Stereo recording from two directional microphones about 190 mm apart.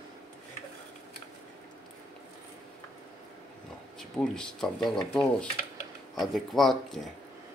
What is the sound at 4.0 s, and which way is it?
Speech, centre (ahead or behind).